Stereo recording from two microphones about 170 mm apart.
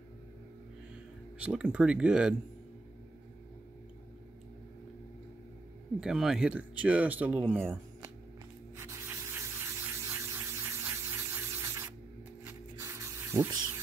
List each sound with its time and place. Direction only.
1.4 s speech: 5° right (ahead or behind)
5.9 s speech: 5° right (ahead or behind)
8.7 s spray: 15° right (ahead or behind)
12.4 s a sound: 15° right (ahead or behind)